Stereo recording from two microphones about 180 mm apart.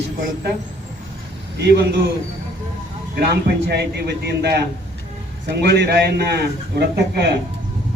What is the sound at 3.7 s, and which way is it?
A man's voice, 65° right (ahead or behind).